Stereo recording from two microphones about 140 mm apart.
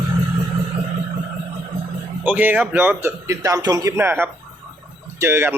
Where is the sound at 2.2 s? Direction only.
15° right (ahead or behind).